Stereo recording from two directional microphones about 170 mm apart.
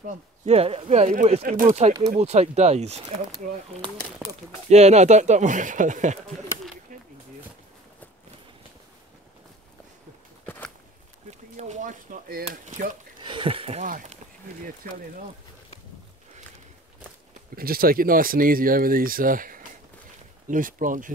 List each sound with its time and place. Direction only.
0.0 s speech: 40° right (ahead or behind)
4.2 s speech: 5° right (ahead or behind)
4.6 s speech: 40° right (ahead or behind)
10.4 s a sound: 10° left (ahead or behind)
11.2 s a sound: 40° right (ahead or behind)
12.4 s speech: 45° right (ahead or behind)
13.2 s speech: 30° right (ahead or behind); by 14.1 s 45° right (ahead or behind)
17.6 s speech: 60° right (ahead or behind)